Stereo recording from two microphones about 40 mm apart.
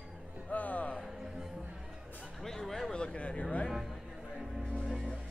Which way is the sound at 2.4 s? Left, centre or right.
Centre.